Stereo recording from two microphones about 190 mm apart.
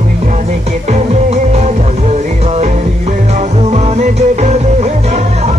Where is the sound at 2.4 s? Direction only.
35° right (ahead or behind).